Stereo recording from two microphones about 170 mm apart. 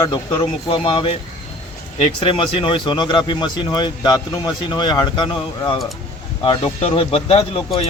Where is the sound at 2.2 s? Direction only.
30° left (ahead or behind).